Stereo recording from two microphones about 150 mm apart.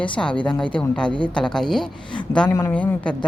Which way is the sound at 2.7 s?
10° left (ahead or behind).